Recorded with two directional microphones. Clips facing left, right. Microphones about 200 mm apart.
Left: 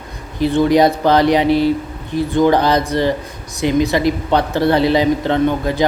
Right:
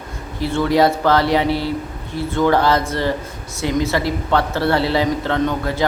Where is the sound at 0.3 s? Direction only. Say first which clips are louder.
Left 4 dB; 20° left (ahead or behind).